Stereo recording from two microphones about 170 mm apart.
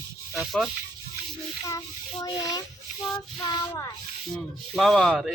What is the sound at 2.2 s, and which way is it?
Child singing, 20° left (ahead or behind).